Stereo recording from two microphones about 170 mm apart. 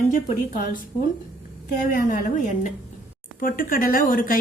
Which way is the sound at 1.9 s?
55° left (ahead or behind).